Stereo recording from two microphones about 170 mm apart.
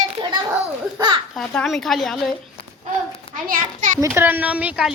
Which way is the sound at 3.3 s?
50° right (ahead or behind).